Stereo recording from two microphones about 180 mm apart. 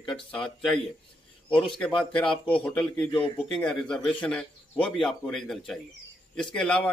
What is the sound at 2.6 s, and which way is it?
A man's voice, 5° left (ahead or behind).